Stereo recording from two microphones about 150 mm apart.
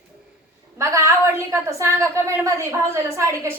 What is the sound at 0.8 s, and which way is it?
A woman's voice, 20° right (ahead or behind).